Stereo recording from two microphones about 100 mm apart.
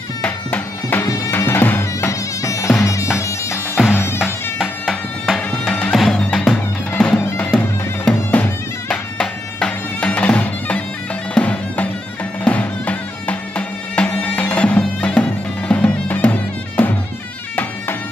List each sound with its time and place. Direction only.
0.2 s bagpipes: 15° left (ahead or behind)
1.0 s music: 35° left (ahead or behind)
1.3 s music: 20° left (ahead or behind)
4.2 s music: centre (ahead or behind)
7.3 s bagpipes: 10° left (ahead or behind)
8.8 s music: 5° left (ahead or behind)